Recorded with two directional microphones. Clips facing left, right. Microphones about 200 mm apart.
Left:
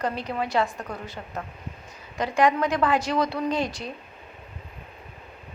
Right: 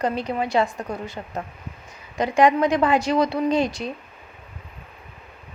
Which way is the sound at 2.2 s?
15° right (ahead or behind).